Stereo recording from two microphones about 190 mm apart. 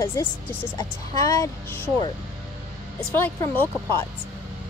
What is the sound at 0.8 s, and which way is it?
Speech, 20° left (ahead or behind).